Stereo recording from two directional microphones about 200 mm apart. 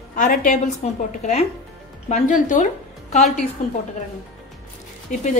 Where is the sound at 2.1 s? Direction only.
40° left (ahead or behind).